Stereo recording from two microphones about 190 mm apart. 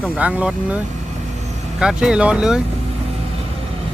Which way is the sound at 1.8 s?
5° right (ahead or behind).